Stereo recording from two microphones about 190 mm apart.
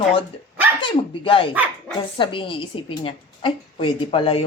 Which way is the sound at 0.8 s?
25° left (ahead or behind).